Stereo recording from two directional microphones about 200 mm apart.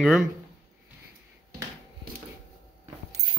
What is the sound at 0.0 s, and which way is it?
Speech, 5° right (ahead or behind).